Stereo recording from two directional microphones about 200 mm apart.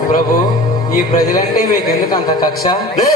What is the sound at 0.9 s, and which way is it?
Speech, 45° left (ahead or behind).